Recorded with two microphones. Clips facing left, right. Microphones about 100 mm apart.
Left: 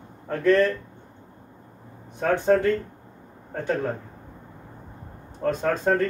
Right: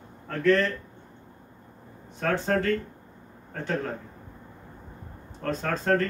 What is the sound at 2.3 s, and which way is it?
Speech, 15° left (ahead or behind).